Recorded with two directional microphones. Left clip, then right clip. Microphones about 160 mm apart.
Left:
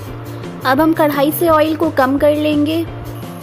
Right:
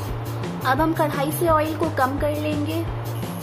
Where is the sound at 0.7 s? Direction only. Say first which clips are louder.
Left 8 dB; 55° left (ahead or behind).